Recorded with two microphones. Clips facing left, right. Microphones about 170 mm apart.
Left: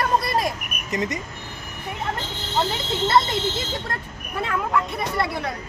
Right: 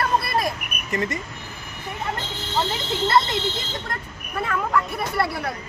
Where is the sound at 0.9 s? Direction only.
15° left (ahead or behind).